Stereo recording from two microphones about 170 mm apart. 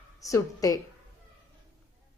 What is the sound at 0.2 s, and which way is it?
Speech, 20° left (ahead or behind).